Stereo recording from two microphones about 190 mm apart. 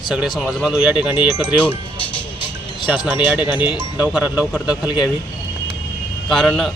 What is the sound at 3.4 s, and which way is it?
Speech, 10° right (ahead or behind).